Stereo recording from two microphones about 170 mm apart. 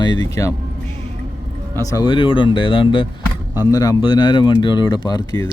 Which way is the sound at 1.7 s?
20° left (ahead or behind).